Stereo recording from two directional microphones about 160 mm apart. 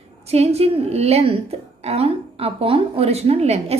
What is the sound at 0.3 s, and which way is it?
A woman's voice, 40° right (ahead or behind).